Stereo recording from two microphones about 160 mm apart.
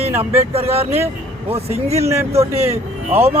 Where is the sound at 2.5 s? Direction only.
40° right (ahead or behind).